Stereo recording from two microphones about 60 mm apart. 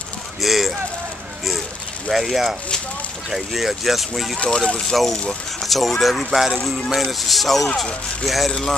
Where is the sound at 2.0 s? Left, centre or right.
Centre.